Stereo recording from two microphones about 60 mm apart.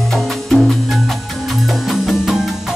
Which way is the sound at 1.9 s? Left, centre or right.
Centre.